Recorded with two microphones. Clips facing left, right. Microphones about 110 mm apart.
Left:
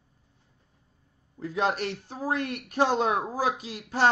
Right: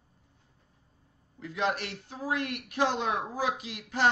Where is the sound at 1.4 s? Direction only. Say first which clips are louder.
Left 4 dB; 35° left (ahead or behind).